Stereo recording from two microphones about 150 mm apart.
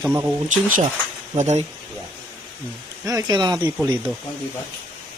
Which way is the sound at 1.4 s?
50° right (ahead or behind).